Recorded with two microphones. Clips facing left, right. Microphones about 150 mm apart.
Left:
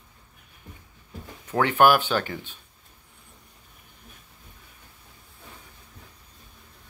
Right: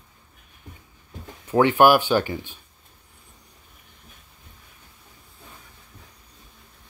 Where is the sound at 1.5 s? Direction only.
15° right (ahead or behind).